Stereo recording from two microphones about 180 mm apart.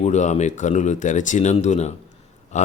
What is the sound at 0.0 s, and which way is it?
Speech, 40° left (ahead or behind).